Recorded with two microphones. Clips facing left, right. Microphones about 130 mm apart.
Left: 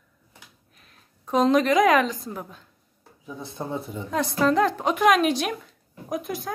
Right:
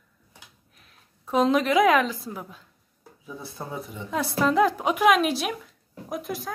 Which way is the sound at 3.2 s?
20° left (ahead or behind).